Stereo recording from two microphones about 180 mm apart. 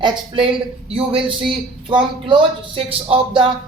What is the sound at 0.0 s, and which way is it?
A man's voice, 25° right (ahead or behind).